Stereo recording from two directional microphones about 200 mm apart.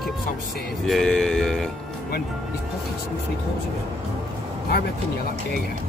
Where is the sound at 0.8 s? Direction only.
Centre (ahead or behind).